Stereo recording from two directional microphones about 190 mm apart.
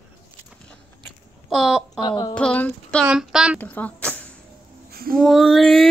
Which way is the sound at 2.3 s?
5° left (ahead or behind).